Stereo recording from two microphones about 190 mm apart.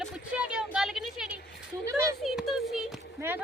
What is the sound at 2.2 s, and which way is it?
Speech, centre (ahead or behind).